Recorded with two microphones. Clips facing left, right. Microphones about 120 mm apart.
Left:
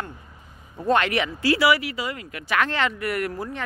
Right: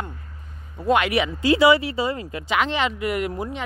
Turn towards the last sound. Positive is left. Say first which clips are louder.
# right 2 dB
turn(degrees=-20)  # may be behind; listen again after turning